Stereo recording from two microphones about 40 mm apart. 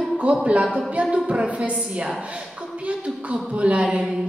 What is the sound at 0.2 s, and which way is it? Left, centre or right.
Speech, right.